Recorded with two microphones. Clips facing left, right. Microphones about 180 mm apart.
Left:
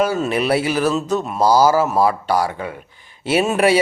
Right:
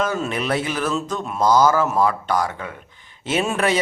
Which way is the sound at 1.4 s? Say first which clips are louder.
Left 2 dB; 35° left (ahead or behind).